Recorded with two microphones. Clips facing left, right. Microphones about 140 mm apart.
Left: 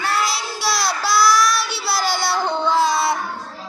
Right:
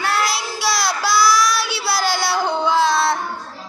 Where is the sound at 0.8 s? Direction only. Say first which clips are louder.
Even; 5° right (ahead or behind).